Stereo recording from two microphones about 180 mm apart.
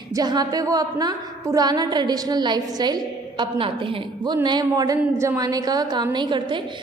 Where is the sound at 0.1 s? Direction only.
20° right (ahead or behind).